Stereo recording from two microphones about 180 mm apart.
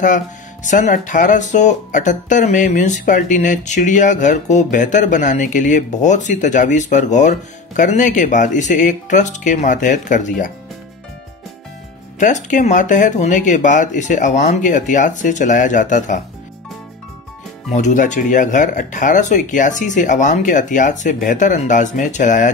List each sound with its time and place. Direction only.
0.7 s speech: 45° left (ahead or behind)
12.2 s speech: 45° left (ahead or behind)
17.6 s speech: 40° left (ahead or behind)